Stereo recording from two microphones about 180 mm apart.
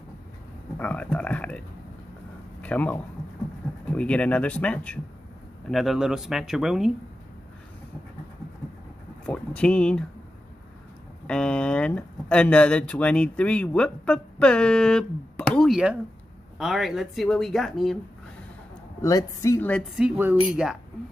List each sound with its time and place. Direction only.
0.7 s speech: 10° left (ahead or behind)
2.6 s speech: 10° left (ahead or behind)
9.2 s speech: 5° left (ahead or behind)
11.2 s speech: 5° left (ahead or behind)
18.9 s speech: 20° left (ahead or behind)
20.0 s speech: 10° right (ahead or behind)